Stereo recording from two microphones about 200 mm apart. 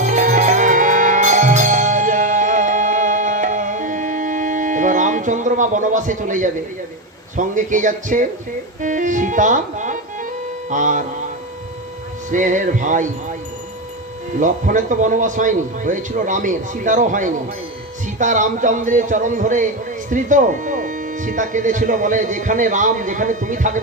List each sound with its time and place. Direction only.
0.0 s music: 40° right (ahead or behind)
7.3 s speech: 40° right (ahead or behind)
12.3 s speech: 40° right (ahead or behind)
14.3 s speech: 40° right (ahead or behind)